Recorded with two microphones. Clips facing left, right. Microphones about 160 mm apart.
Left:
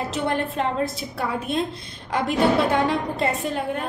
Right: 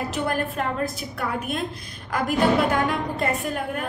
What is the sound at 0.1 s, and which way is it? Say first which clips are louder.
Speech: left 1 dB; 25° left (ahead or behind).